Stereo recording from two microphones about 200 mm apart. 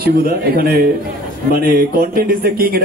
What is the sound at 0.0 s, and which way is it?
A man's voice, 45° right (ahead or behind).